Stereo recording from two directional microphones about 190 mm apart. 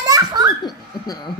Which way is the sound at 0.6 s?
20° left (ahead or behind).